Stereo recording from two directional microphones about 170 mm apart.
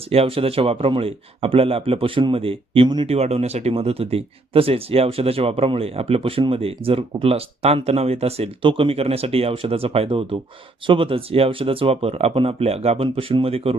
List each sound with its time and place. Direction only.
0.1 s a man's voice: 35° right (ahead or behind)